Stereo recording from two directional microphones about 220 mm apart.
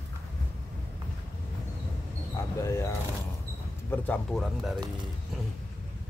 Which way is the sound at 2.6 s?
15° left (ahead or behind).